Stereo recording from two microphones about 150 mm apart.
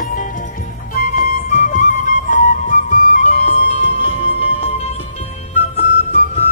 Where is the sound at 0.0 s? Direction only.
65° left (ahead or behind).